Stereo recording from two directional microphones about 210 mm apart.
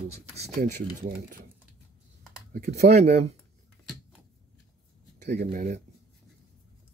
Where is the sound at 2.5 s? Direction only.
35° right (ahead or behind).